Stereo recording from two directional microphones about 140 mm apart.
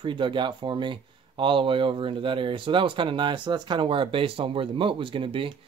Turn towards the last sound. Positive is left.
turn(degrees=-40)  # may be behind; listen again after turning